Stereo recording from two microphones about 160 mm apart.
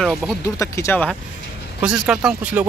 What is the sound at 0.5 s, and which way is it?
Speech, 20° left (ahead or behind).